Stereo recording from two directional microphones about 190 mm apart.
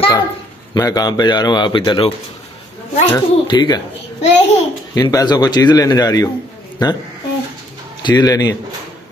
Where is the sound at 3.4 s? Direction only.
20° left (ahead or behind).